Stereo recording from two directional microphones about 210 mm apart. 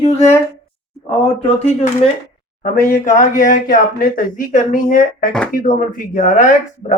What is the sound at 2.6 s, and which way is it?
Speech, 40° left (ahead or behind).